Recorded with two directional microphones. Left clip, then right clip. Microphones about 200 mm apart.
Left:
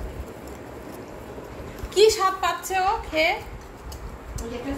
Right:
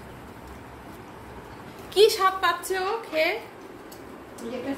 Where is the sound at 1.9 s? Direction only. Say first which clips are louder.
Left 1 dB; 15° right (ahead or behind).